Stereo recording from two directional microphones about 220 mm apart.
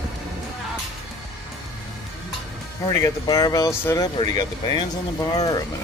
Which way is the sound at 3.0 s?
15° left (ahead or behind).